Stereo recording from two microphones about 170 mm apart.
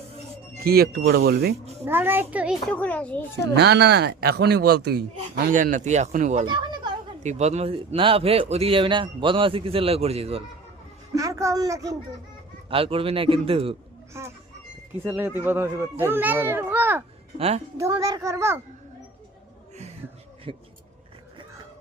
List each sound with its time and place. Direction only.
0.6 s speech: 65° right (ahead or behind)
1.8 s a child's voice: 15° right (ahead or behind)
2.6 s a child's voice: 10° left (ahead or behind)
3.5 s speech: 75° right (ahead or behind)
5.5 s speech: 50° right (ahead or behind)
6.4 s a sound: 30° right (ahead or behind)
7.2 s a man's voice: 40° right (ahead or behind)
11.1 s speech: 20° right (ahead or behind)
12.7 s a man's voice: 35° right (ahead or behind)
14.1 s a child's voice: 15° right (ahead or behind)
17.3 s a man's voice: 35° right (ahead or behind)
17.7 s a child's voice: 20° right (ahead or behind)
20.5 s a man's voice: 30° right (ahead or behind)